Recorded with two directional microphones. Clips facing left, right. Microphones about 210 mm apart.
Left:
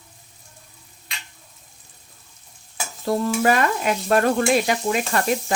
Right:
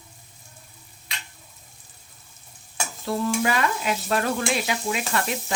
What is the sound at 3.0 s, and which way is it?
Stir, 50° left (ahead or behind).